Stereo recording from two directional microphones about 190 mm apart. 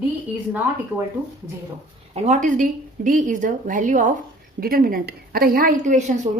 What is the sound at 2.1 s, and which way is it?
Speech, 35° right (ahead or behind).